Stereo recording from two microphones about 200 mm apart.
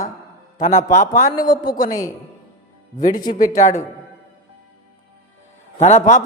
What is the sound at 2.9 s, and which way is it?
Speech, 40° left (ahead or behind).